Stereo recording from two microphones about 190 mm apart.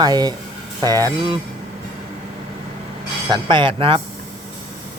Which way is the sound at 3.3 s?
25° right (ahead or behind).